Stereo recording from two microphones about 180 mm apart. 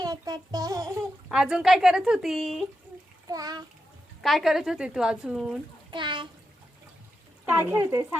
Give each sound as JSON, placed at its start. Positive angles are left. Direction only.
{"t": 0.0, "sound": "child singing", "side_deg": -20}
{"t": 1.3, "sound": "speech", "side_deg": -5}
{"t": 3.2, "sound": "a child's voice", "side_deg": -20}
{"t": 4.2, "sound": "speech", "side_deg": 0}
{"t": 5.9, "sound": "a child's voice", "side_deg": -25}
{"t": 7.4, "sound": "a woman's voice", "side_deg": -10}